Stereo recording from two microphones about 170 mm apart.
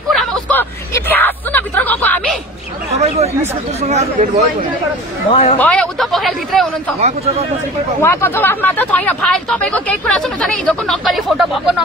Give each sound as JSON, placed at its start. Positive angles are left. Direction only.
{"t": 0.1, "sound": "hubbub", "side_deg": 5}
{"t": 3.9, "sound": "speech", "side_deg": -40}
{"t": 5.3, "sound": "speech", "side_deg": 40}
{"t": 5.6, "sound": "speech", "side_deg": 5}
{"t": 7.0, "sound": "speech", "side_deg": -40}
{"t": 8.0, "sound": "speech", "side_deg": 15}